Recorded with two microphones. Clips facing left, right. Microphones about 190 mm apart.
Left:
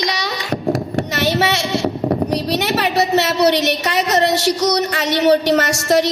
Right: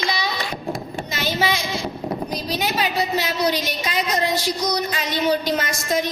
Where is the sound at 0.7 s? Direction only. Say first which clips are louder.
Left 9 dB; 70° left (ahead or behind).